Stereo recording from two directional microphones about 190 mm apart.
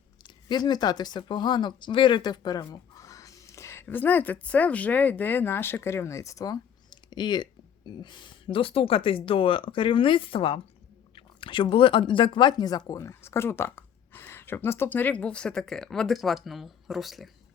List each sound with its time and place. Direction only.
0.2 s speech: 20° left (ahead or behind); by 17.2 s centre (ahead or behind)